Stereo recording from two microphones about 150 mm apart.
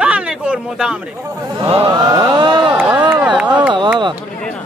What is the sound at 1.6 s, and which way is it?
Chant, 35° right (ahead or behind).